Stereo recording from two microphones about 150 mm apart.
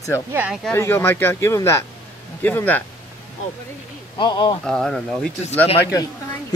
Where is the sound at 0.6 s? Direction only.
15° left (ahead or behind).